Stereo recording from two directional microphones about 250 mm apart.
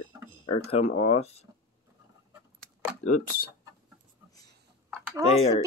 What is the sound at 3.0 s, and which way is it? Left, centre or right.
Speech, left.